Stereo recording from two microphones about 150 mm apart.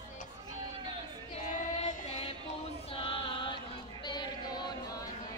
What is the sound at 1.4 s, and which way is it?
Child singing, 50° left (ahead or behind).